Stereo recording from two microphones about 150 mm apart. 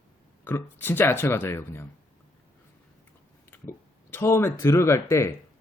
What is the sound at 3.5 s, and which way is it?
Speech, 15° left (ahead or behind).